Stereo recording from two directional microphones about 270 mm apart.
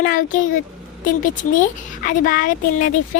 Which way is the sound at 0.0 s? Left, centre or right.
Left.